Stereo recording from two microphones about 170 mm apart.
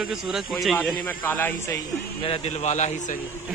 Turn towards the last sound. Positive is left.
turn(degrees=45)  # may be behind; listen again after turning